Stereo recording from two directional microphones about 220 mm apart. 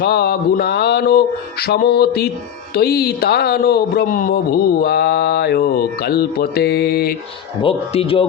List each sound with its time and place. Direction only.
0.0 s speech: 45° left (ahead or behind)
7.6 s speech: 25° left (ahead or behind)